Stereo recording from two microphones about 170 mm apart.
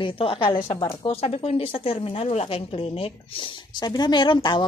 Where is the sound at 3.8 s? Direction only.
25° left (ahead or behind).